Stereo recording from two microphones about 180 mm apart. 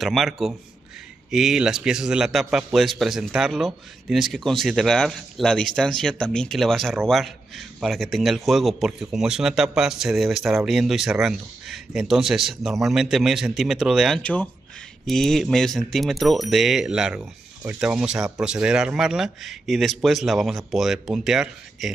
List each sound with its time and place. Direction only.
0.0 s a man's voice: centre (ahead or behind)